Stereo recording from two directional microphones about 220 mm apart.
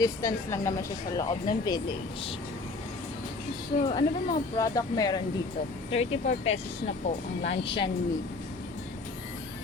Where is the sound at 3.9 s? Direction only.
20° left (ahead or behind).